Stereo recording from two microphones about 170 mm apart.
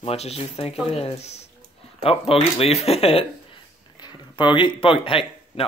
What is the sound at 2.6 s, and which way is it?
A man's voice, 35° left (ahead or behind).